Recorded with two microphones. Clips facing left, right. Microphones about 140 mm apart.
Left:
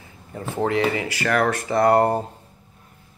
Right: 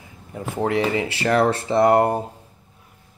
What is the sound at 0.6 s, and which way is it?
Speech, 20° right (ahead or behind).